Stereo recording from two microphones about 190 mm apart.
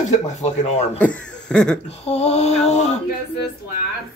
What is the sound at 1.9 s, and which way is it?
A man's voice, 35° left (ahead or behind).